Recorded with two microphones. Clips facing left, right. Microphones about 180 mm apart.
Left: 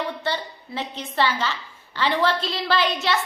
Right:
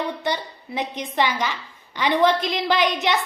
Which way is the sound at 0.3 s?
15° right (ahead or behind).